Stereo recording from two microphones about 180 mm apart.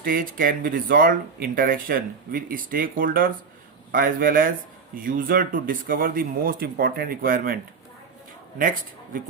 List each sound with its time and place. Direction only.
0.0 s speech: 50° right (ahead or behind)